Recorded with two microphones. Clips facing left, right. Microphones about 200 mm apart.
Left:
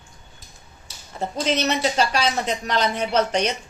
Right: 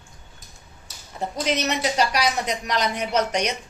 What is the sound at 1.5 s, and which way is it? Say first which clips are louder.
Speech: left 2 dB; 30° left (ahead or behind).